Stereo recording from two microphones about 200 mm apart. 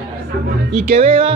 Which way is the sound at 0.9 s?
30° right (ahead or behind).